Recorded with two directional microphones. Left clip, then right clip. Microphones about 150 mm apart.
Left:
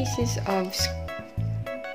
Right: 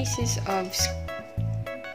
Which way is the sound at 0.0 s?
15° left (ahead or behind).